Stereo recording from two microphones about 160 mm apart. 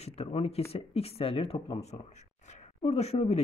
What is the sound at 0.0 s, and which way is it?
Speech, 40° left (ahead or behind).